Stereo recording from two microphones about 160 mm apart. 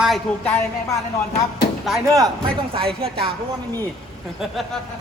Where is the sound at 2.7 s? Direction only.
35° right (ahead or behind).